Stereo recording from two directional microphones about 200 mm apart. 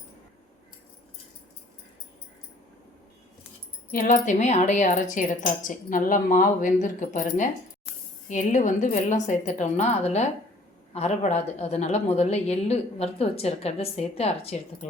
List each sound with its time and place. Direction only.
3.9 s a woman's voice: 40° left (ahead or behind)
8.3 s a woman's voice: 40° left (ahead or behind)